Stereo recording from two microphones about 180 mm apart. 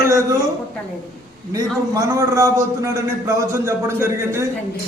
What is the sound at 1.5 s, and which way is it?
A man's voice, 20° right (ahead or behind).